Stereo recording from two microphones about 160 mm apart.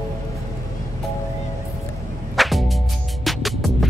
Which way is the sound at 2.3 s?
Centre (ahead or behind).